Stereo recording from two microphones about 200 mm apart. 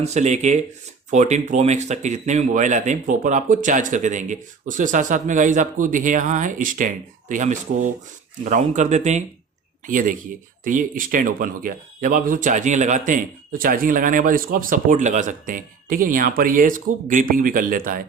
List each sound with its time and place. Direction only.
0.0 s speech: 35° right (ahead or behind)